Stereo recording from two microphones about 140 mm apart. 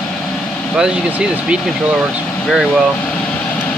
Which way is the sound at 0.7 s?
5° right (ahead or behind).